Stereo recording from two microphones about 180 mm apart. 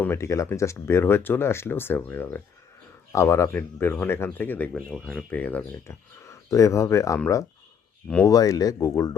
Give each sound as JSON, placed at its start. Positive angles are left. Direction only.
{"t": 0.0, "sound": "speech", "side_deg": 15}